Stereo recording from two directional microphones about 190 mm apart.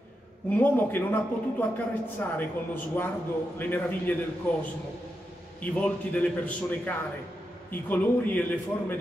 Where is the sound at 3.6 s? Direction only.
10° left (ahead or behind).